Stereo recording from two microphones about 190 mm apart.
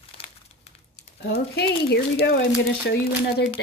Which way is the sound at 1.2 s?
60° left (ahead or behind).